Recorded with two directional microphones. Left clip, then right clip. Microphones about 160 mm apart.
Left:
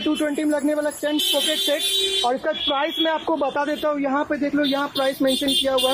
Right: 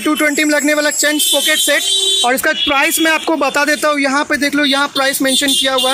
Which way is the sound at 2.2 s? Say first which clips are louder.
Right 8 dB; 25° right (ahead or behind).